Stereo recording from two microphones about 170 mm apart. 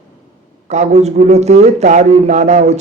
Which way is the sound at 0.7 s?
40° right (ahead or behind).